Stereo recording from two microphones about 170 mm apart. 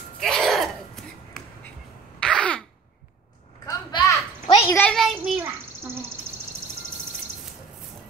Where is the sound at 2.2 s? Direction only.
5° left (ahead or behind).